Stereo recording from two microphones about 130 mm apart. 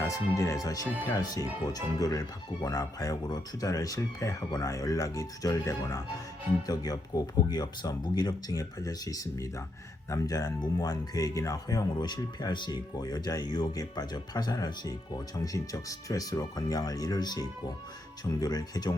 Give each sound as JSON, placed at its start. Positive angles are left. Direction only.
{"t": 0.0, "sound": "speech", "side_deg": 25}